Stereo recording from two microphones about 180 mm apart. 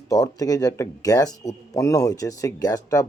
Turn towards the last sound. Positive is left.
turn(degrees=20)  # may be behind; listen again after turning